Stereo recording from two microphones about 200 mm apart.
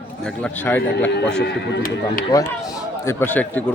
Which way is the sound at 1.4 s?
50° left (ahead or behind).